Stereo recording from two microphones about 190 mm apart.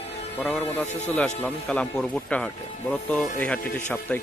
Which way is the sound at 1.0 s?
5° left (ahead or behind).